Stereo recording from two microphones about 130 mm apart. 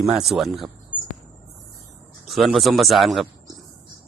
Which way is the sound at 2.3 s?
Centre (ahead or behind).